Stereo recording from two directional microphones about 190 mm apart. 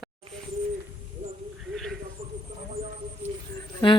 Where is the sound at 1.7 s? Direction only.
Centre (ahead or behind).